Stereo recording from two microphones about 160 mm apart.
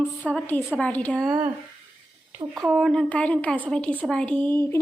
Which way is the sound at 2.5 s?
15° right (ahead or behind).